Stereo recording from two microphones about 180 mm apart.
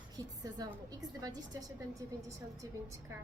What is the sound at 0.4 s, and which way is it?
Speech, 20° right (ahead or behind).